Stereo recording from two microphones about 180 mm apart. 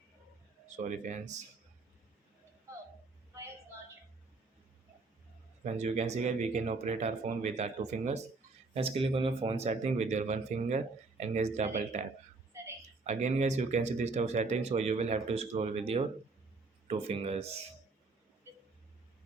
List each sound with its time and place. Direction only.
0.8 s speech: 40° right (ahead or behind)
5.6 s speech: 40° right (ahead or behind)
13.1 s speech: 40° right (ahead or behind)